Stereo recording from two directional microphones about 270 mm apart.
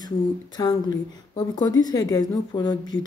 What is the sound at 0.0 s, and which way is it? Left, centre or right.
Speech, centre.